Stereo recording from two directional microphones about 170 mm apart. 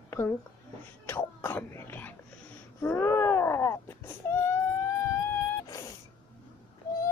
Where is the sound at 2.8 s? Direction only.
15° left (ahead or behind).